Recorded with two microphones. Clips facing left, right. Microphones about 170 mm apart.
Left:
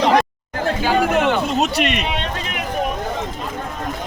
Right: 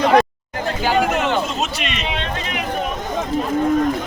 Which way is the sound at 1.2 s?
60° left (ahead or behind).